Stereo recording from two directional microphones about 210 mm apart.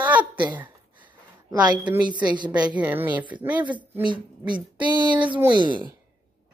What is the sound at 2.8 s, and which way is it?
Speech, 10° right (ahead or behind).